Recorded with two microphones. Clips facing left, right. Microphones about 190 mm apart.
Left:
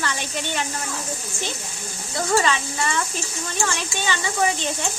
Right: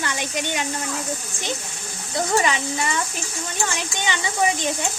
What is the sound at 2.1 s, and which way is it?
A woman's voice, 20° right (ahead or behind).